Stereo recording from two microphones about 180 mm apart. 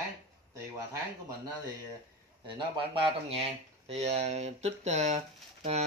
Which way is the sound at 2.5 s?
25° right (ahead or behind).